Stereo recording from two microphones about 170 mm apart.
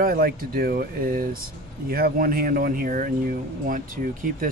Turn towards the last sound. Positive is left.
turn(degrees=-55)  # may be behind; listen again after turning